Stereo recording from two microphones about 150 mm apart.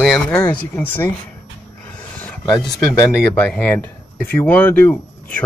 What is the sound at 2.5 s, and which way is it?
Speech, centre (ahead or behind).